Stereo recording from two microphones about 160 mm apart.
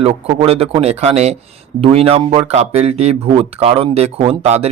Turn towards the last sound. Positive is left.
turn(degrees=-40)  # may be behind; listen again after turning